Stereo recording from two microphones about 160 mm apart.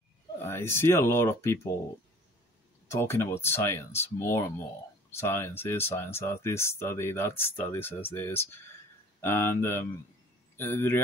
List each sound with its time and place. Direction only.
0.4 s speech: 15° left (ahead or behind)
2.9 s speech: 15° left (ahead or behind)